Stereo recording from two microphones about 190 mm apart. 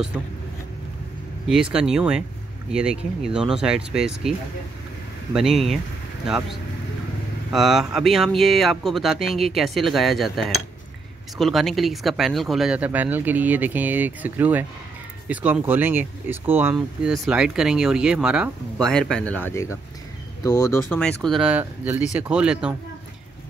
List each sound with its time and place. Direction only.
1.5 s speech: 5° right (ahead or behind); by 20.8 s 20° left (ahead or behind)
20.9 s speech: 5° left (ahead or behind)